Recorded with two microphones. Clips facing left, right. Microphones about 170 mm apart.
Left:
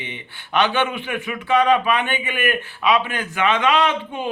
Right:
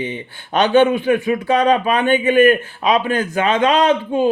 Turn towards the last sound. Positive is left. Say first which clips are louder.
# right 7 dB
turn(degrees=-40)  # may be behind; listen again after turning